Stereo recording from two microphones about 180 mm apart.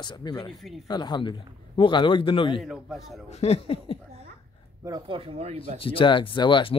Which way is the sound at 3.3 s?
35° left (ahead or behind).